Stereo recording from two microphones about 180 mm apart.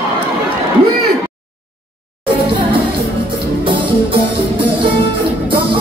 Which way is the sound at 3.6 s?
25° right (ahead or behind).